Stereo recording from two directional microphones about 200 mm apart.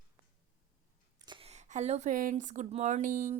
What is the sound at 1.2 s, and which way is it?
Speech, 25° right (ahead or behind).